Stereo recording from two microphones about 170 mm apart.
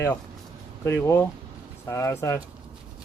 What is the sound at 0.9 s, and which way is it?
Speech, 15° left (ahead or behind).